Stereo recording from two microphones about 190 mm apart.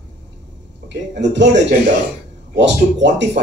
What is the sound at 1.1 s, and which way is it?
Speech, 65° right (ahead or behind).